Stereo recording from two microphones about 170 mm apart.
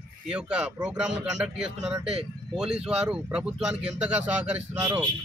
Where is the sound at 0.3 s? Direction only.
5° right (ahead or behind).